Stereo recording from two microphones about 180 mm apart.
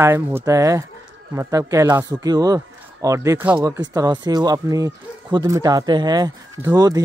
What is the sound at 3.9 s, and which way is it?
Speech, 20° right (ahead or behind).